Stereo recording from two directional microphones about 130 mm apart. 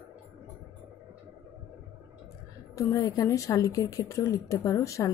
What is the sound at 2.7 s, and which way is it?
Speech, 25° left (ahead or behind).